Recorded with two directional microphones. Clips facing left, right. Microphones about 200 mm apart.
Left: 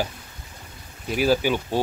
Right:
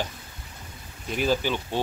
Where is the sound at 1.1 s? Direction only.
5° left (ahead or behind).